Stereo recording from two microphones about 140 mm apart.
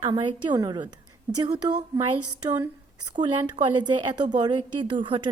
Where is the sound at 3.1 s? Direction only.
35° right (ahead or behind).